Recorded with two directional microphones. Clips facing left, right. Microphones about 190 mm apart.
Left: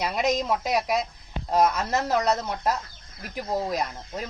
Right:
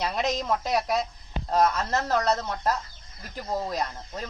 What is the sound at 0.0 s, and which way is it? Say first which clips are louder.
Speech: left 3 dB; 10° left (ahead or behind).